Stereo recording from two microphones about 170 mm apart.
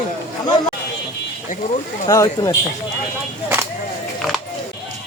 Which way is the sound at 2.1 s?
20° left (ahead or behind).